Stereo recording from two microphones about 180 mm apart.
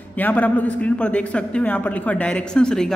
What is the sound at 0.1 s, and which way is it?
A man's voice, 10° left (ahead or behind).